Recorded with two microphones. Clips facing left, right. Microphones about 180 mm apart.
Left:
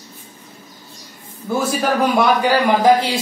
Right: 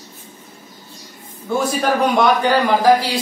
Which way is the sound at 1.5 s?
5° left (ahead or behind).